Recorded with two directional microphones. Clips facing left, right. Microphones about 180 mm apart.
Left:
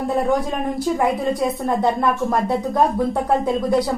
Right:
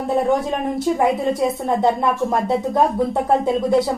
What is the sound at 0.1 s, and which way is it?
A woman's voice, centre (ahead or behind).